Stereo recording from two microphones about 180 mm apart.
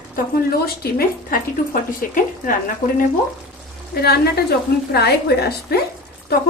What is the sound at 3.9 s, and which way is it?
Speech, 60° left (ahead or behind).